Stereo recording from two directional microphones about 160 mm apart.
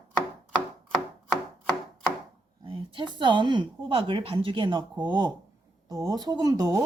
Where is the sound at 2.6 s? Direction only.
35° right (ahead or behind).